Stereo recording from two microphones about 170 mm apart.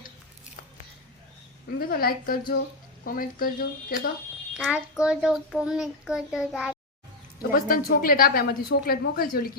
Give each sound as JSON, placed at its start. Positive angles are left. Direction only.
{"t": 1.9, "sound": "a woman's voice", "side_deg": 60}
{"t": 4.5, "sound": "a child's voice", "side_deg": -5}
{"t": 7.5, "sound": "a woman's voice", "side_deg": 60}